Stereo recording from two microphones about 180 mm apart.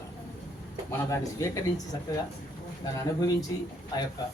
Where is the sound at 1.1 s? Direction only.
20° left (ahead or behind).